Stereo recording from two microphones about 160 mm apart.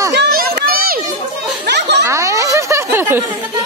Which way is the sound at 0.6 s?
70° right (ahead or behind).